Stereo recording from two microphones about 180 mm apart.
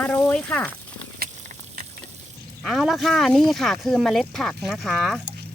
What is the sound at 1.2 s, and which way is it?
Patter, 55° right (ahead or behind).